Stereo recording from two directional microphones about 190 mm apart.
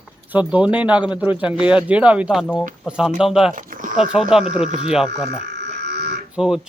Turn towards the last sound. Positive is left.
turn(degrees=-5)  # may be behind; listen again after turning